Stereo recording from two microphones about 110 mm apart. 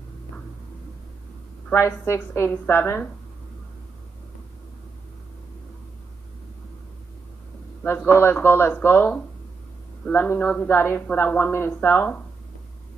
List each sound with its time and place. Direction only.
1.7 s a woman's voice: 25° left (ahead or behind)
8.1 s a woman's voice: 20° left (ahead or behind)